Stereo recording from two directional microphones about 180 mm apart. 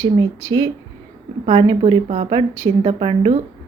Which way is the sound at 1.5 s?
30° right (ahead or behind).